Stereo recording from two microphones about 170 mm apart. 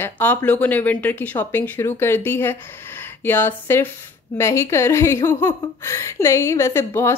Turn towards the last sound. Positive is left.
turn(degrees=15)  # may be behind; listen again after turning